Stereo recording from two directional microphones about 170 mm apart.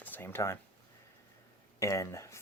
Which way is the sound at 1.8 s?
15° left (ahead or behind).